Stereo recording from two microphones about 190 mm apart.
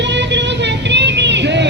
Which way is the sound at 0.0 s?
65° right (ahead or behind).